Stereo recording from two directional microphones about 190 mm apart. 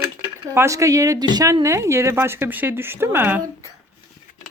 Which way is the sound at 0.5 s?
15° right (ahead or behind).